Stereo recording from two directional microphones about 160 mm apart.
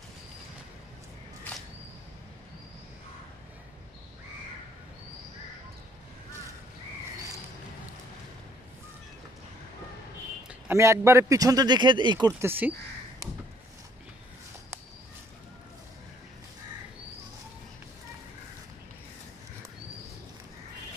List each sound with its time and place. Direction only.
10.5 s a man's voice: 15° right (ahead or behind)
12.4 s speech: 15° right (ahead or behind)